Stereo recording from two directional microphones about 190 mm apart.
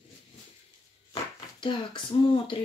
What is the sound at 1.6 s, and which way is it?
Speech, 25° left (ahead or behind).